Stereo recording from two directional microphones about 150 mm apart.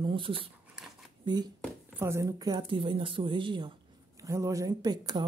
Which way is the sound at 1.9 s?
20° right (ahead or behind).